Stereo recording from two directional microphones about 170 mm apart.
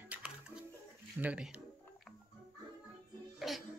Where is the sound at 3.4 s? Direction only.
Centre (ahead or behind).